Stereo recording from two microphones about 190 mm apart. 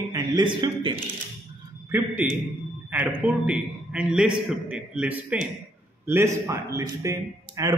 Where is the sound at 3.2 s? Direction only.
5° right (ahead or behind).